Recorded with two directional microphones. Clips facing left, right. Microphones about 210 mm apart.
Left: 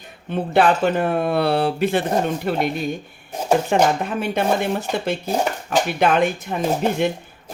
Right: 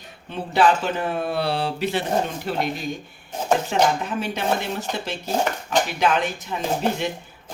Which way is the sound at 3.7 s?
55° left (ahead or behind).